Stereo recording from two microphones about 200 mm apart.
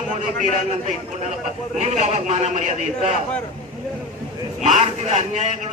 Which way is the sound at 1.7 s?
35° right (ahead or behind).